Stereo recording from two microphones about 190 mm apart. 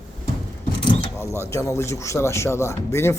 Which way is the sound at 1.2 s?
15° left (ahead or behind).